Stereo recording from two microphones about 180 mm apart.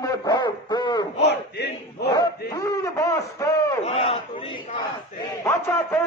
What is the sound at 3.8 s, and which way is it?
Speech, 35° left (ahead or behind).